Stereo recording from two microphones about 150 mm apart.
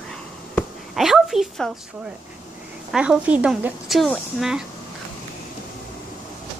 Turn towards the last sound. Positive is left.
turn(degrees=-5)  # may be behind; listen again after turning